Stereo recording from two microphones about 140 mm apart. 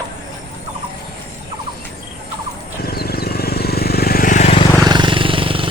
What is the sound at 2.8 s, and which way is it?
Vehicle, 90° left.